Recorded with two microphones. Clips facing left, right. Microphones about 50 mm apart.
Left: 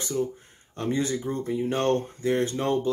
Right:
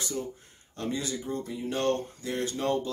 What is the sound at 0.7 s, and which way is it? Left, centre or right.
Speech, left.